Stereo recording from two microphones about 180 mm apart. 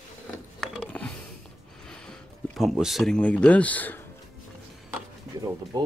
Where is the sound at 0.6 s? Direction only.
5° left (ahead or behind).